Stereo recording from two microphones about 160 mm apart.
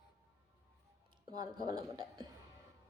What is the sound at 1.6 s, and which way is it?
Speech, 25° right (ahead or behind).